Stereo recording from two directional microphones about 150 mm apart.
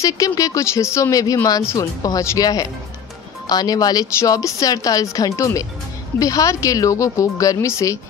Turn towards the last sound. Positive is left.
turn(degrees=20)  # may be behind; listen again after turning